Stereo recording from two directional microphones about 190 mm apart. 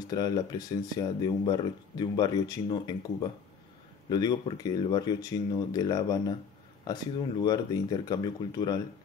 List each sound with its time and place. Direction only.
0.1 s speech: 20° left (ahead or behind)